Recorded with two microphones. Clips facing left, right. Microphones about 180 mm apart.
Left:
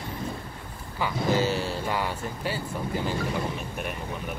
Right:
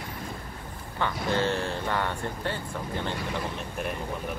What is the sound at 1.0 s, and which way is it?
Speech, 5° left (ahead or behind).